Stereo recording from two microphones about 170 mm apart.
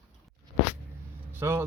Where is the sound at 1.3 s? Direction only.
15° right (ahead or behind).